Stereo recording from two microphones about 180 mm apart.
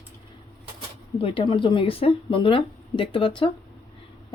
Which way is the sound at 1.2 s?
30° left (ahead or behind).